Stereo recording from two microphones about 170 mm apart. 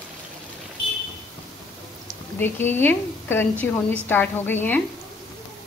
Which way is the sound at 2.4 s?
10° left (ahead or behind).